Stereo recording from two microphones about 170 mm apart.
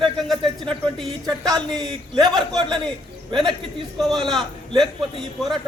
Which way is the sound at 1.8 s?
25° right (ahead or behind).